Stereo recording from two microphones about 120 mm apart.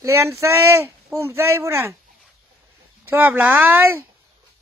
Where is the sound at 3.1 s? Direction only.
15° right (ahead or behind).